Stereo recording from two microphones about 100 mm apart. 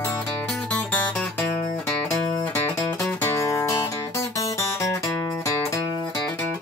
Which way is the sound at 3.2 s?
30° left (ahead or behind).